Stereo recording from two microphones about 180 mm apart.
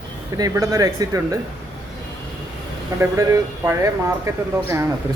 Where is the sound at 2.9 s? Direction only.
15° right (ahead or behind).